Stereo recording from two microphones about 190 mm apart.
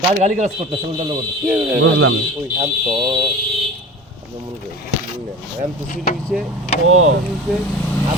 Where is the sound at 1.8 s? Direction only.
90° right.